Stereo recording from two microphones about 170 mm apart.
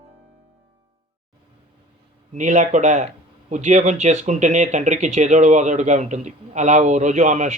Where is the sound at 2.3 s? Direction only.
45° right (ahead or behind).